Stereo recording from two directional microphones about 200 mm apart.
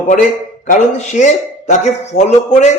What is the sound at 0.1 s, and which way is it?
Speech, 40° left (ahead or behind).